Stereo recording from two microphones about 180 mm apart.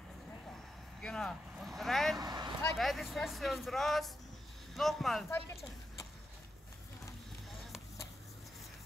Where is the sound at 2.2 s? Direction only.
20° right (ahead or behind).